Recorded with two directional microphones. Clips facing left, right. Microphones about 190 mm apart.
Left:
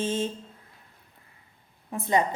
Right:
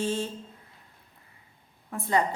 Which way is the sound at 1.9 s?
20° left (ahead or behind).